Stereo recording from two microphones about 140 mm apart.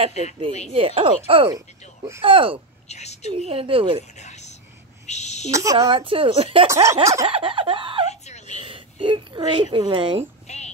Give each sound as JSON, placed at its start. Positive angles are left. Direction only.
{"t": 0.7, "sound": "speech", "side_deg": -40}
{"t": 2.9, "sound": "a woman's voice", "side_deg": 50}
{"t": 3.3, "sound": "speech", "side_deg": -45}
{"t": 4.2, "sound": "a sound", "side_deg": 55}
{"t": 5.5, "sound": "speech", "side_deg": -20}
{"t": 5.9, "sound": "speech", "side_deg": -40}
{"t": 6.7, "sound": "speech", "side_deg": -20}
{"t": 7.2, "sound": "speech", "side_deg": -40}
{"t": 8.1, "sound": "a sound", "side_deg": 50}
{"t": 8.5, "sound": "speech", "side_deg": -40}
{"t": 10.5, "sound": "music", "side_deg": 50}